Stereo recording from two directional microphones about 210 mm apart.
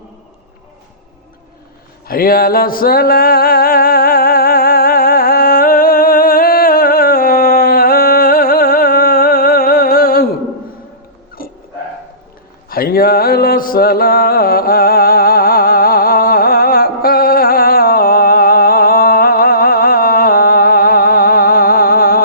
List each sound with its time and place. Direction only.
2.0 s music: 45° left (ahead or behind)
11.4 s dog: 45° left (ahead or behind)
12.6 s a sound: 45° left (ahead or behind)